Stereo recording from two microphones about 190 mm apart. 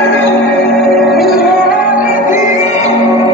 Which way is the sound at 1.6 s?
50° left (ahead or behind).